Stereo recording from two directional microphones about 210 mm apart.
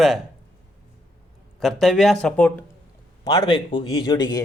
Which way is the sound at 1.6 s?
Centre (ahead or behind).